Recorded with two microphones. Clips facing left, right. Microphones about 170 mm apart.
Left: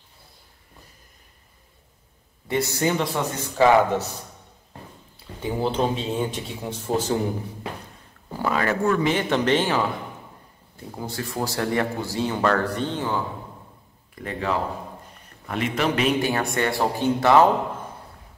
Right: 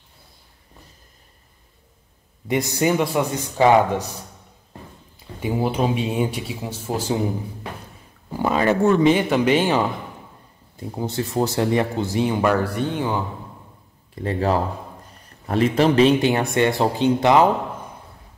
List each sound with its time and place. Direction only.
2.4 s speech: 15° right (ahead or behind)
5.4 s speech: 10° right (ahead or behind)
8.3 s speech: 20° right (ahead or behind)
11.0 s speech: 25° right (ahead or behind)
14.1 s speech: 35° right (ahead or behind); by 17.5 s 20° right (ahead or behind)